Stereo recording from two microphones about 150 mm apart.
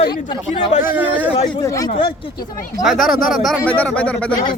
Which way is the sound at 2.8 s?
Centre (ahead or behind).